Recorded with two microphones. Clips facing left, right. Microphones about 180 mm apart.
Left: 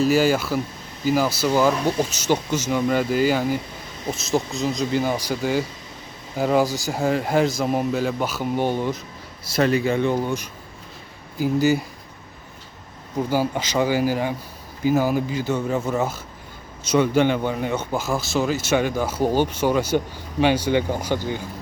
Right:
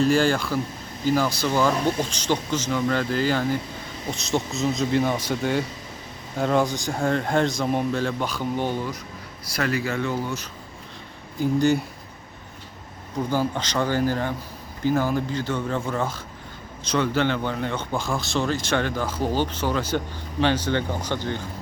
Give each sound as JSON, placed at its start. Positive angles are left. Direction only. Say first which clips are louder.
{"t": 0.0, "sound": "speech", "louder": "left 2 dB", "side_deg": 5}
{"t": 11.3, "sound": "speech", "louder": "left 1 dB", "side_deg": 5}
{"t": 13.3, "sound": "speech", "louder": "left 3 dB", "side_deg": 10}